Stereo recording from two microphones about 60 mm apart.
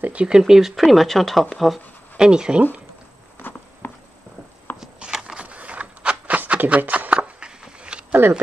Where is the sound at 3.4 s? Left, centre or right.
Left.